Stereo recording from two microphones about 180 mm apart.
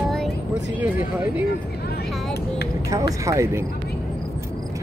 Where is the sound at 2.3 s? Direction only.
60° left (ahead or behind).